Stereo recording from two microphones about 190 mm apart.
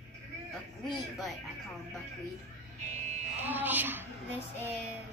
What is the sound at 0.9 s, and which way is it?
Speech, centre (ahead or behind).